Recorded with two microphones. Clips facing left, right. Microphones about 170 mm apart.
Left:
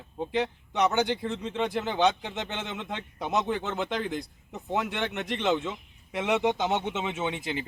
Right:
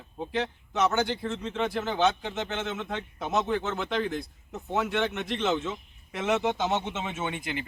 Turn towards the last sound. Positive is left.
turn(degrees=25)  # may be behind; listen again after turning